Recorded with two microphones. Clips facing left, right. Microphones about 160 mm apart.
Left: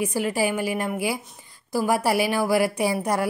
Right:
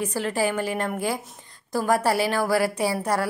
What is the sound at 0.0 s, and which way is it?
A woman's voice, 10° left (ahead or behind).